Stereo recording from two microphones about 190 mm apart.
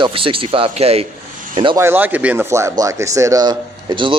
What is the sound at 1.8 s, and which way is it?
A man's voice, 10° right (ahead or behind).